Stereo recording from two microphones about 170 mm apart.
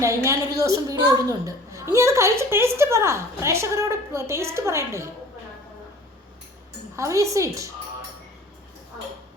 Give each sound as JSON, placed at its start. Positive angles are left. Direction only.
{"t": 0.0, "sound": "a woman's voice", "side_deg": -15}
{"t": 6.9, "sound": "a woman's voice", "side_deg": -15}